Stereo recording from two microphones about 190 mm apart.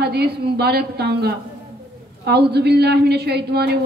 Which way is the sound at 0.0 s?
60° right (ahead or behind).